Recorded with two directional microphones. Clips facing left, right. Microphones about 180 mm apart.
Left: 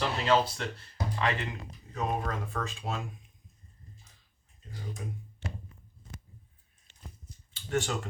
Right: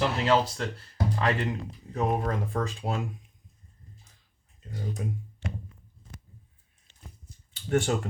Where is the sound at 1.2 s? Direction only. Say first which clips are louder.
Right 3 dB; 35° right (ahead or behind).